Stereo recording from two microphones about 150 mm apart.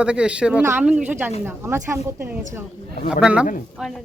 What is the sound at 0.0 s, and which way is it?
Speech, 5° right (ahead or behind).